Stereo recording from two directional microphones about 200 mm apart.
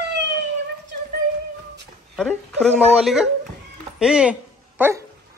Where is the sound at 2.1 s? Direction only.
Centre (ahead or behind).